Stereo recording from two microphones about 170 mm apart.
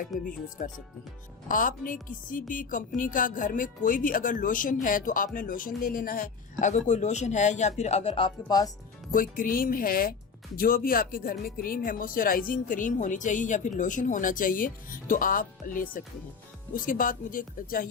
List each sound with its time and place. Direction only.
0.0 s speech: 50° left (ahead or behind); by 8.7 s 25° left (ahead or behind)
9.1 s speech: 55° left (ahead or behind)